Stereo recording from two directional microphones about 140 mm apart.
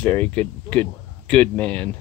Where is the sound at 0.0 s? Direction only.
10° left (ahead or behind).